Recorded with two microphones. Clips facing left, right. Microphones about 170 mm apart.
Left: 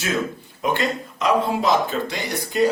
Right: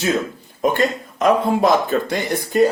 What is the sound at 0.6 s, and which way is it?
Speech, 50° right (ahead or behind).